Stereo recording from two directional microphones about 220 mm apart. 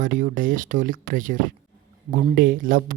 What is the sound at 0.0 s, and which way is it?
Speech, 35° right (ahead or behind).